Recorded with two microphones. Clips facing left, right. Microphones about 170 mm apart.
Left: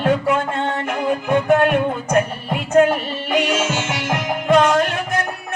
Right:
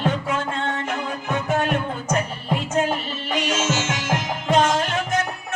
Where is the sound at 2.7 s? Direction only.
55° left (ahead or behind).